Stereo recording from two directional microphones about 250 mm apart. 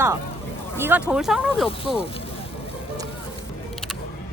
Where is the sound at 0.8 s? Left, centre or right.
Centre.